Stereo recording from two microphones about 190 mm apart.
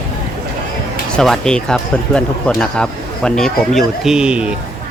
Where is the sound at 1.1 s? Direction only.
5° left (ahead or behind).